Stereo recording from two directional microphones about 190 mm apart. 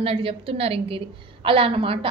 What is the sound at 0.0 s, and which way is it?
A woman's voice, 30° right (ahead or behind).